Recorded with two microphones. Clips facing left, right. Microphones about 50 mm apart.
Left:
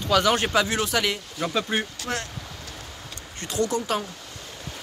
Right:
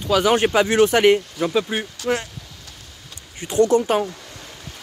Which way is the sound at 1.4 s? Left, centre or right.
Centre.